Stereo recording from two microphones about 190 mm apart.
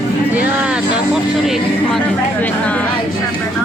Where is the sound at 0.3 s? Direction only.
5° right (ahead or behind).